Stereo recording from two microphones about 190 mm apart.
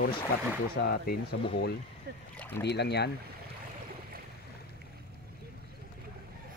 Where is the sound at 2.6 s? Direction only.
60° left (ahead or behind).